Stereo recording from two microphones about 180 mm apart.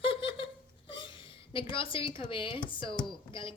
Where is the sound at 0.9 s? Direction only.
25° left (ahead or behind).